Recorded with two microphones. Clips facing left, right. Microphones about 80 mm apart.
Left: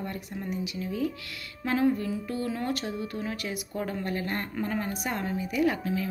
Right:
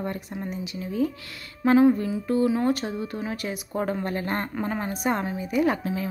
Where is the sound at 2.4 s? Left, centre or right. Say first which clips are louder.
Right 7 dB; right.